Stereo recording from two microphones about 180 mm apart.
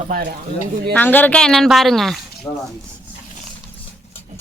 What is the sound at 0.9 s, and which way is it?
Speech, 10° left (ahead or behind).